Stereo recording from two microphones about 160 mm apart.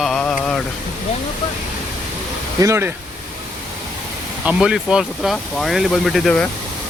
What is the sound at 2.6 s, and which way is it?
Speech, 15° right (ahead or behind).